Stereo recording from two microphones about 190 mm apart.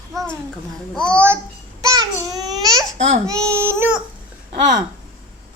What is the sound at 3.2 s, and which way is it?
Speech, 15° right (ahead or behind).